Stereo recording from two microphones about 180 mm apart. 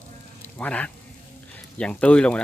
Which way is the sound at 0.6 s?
5° left (ahead or behind).